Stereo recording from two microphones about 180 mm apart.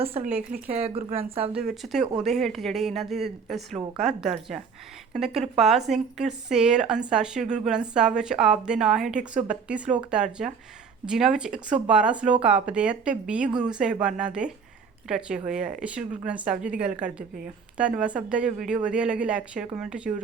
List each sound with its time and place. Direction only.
0.0 s speech: 35° right (ahead or behind)
0.3 s speech: 5° right (ahead or behind)
0.7 s speech: 35° right (ahead or behind)
1.5 s speech: centre (ahead or behind)